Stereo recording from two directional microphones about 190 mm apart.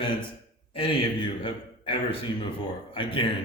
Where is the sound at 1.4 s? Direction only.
25° left (ahead or behind).